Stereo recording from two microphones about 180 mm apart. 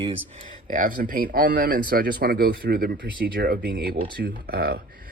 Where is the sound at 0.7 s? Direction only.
50° right (ahead or behind).